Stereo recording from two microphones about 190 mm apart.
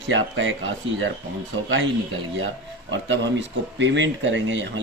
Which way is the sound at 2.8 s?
75° right (ahead or behind).